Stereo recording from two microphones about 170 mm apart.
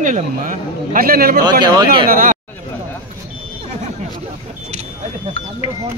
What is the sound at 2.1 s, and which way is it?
Speech, 55° right (ahead or behind).